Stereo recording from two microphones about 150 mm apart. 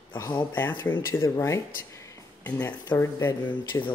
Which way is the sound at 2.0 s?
20° left (ahead or behind).